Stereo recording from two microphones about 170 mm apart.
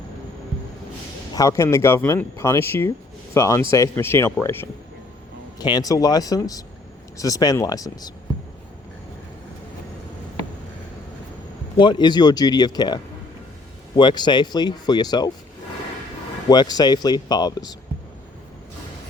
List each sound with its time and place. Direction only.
1.3 s speech: 20° left (ahead or behind)
5.5 s speech: 25° left (ahead or behind)
11.8 s speech: 25° left (ahead or behind)
16.5 s speech: 25° left (ahead or behind)